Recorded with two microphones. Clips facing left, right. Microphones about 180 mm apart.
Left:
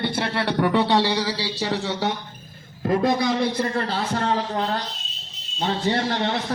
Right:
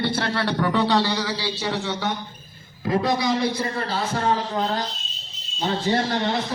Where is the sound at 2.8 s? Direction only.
50° left (ahead or behind).